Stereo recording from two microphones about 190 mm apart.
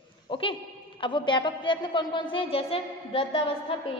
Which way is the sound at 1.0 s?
25° left (ahead or behind).